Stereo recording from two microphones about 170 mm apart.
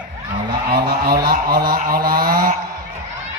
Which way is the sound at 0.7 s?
65° right (ahead or behind).